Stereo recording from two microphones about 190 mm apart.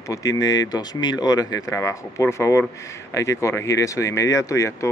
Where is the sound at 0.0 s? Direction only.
15° left (ahead or behind).